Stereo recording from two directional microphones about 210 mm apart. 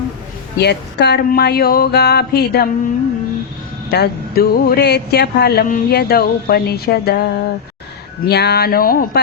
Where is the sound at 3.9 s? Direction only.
50° left (ahead or behind).